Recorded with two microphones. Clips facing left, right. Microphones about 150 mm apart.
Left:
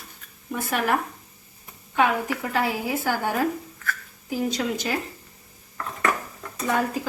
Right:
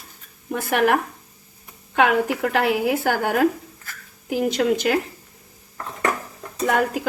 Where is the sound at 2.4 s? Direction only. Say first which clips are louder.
Right 6 dB; 70° right (ahead or behind).